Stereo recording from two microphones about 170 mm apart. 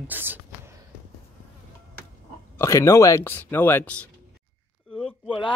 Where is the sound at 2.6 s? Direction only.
15° left (ahead or behind).